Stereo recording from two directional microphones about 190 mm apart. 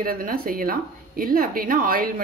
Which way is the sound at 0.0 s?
50° right (ahead or behind).